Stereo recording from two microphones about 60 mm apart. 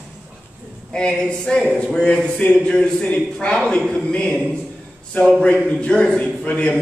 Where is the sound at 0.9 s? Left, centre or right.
Centre.